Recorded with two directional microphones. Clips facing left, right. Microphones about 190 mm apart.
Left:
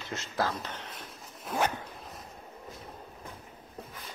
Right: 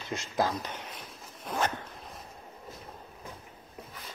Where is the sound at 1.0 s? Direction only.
Centre (ahead or behind).